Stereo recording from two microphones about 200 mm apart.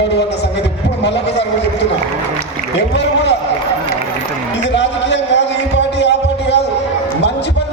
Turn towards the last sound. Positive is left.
turn(degrees=60)  # may be behind; listen again after turning